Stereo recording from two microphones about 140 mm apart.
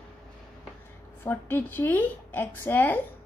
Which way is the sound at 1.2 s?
15° left (ahead or behind).